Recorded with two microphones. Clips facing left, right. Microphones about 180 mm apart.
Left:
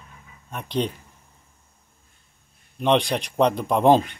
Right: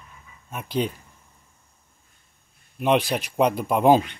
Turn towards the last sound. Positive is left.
turn(degrees=-5)  # may be behind; listen again after turning